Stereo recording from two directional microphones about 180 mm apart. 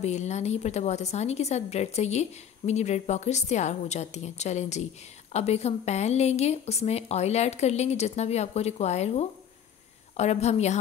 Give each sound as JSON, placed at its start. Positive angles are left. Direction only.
{"t": 0.0, "sound": "a woman's voice", "side_deg": 40}